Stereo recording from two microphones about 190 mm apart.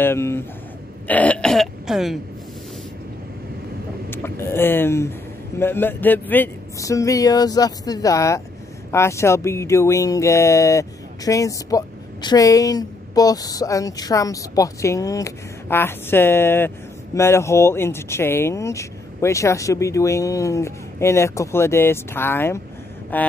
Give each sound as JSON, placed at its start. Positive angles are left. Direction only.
{"t": 0.0, "sound": "speech", "side_deg": 15}
{"t": 4.1, "sound": "speech", "side_deg": 10}